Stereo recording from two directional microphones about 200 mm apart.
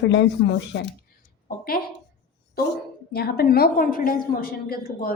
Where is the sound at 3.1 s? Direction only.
50° left (ahead or behind).